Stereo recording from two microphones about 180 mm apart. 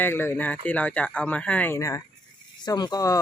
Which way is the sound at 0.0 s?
10° left (ahead or behind).